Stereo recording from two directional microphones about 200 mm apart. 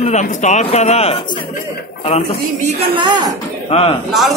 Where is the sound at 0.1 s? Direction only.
35° left (ahead or behind).